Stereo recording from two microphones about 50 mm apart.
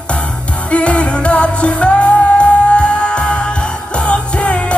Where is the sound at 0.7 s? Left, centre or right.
Left.